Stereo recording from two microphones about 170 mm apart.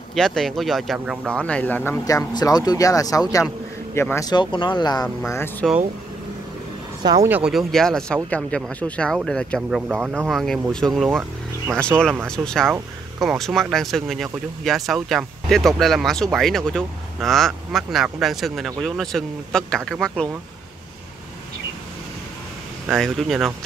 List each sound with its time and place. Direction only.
0.1 s speech: 5° left (ahead or behind)
1.3 s speech: 5° left (ahead or behind); by 5.0 s 25° left (ahead or behind)
5.2 s speech: 15° left (ahead or behind)
7.2 s speech: 5° right (ahead or behind)
11.1 s a sound: 10° right (ahead or behind)
12.3 s speech: 5° left (ahead or behind)
22.8 s speech: centre (ahead or behind)